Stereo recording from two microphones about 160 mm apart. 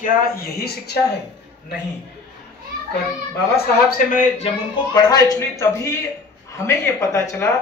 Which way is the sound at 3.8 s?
65° left (ahead or behind).